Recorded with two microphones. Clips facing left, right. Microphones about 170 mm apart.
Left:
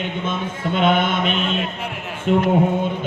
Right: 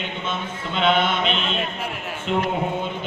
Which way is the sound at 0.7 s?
50° left (ahead or behind).